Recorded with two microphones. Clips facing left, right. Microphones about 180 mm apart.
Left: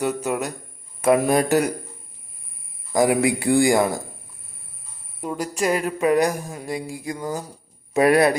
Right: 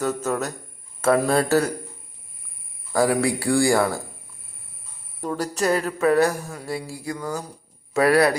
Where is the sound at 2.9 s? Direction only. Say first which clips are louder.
Left 2 dB; 15° left (ahead or behind).